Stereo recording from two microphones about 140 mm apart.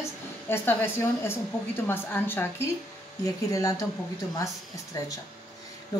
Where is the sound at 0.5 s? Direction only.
15° left (ahead or behind).